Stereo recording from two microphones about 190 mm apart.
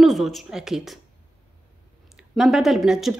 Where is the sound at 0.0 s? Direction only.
Centre (ahead or behind).